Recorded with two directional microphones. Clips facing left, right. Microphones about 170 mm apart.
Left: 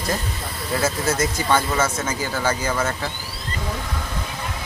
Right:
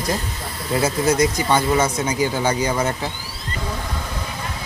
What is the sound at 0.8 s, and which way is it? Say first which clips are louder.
Speech: right 5 dB; 15° right (ahead or behind).